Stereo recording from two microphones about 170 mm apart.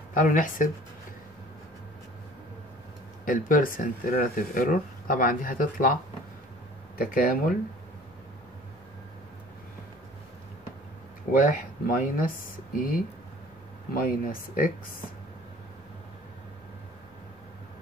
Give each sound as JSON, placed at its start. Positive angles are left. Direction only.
{"t": 0.1, "sound": "speech", "side_deg": 50}
{"t": 3.3, "sound": "speech", "side_deg": 50}
{"t": 7.0, "sound": "speech", "side_deg": 60}
{"t": 11.3, "sound": "speech", "side_deg": 55}